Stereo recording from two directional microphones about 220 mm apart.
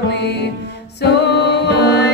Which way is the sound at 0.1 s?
50° left (ahead or behind).